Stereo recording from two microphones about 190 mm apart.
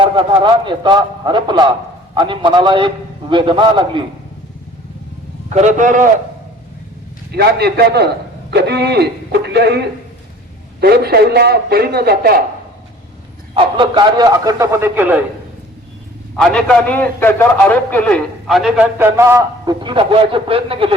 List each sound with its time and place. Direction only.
0.0 s a man's voice: 25° right (ahead or behind)
5.5 s a man's voice: 40° right (ahead or behind)
7.3 s a man's voice: 60° right (ahead or behind)
13.5 s a man's voice: 25° right (ahead or behind); by 15.2 s 10° right (ahead or behind)
16.4 s a man's voice: 5° left (ahead or behind)
18.9 s a man's voice: 15° right (ahead or behind); by 20.9 s 30° right (ahead or behind)